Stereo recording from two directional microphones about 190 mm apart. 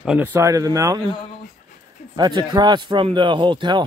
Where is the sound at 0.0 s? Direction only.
5° right (ahead or behind).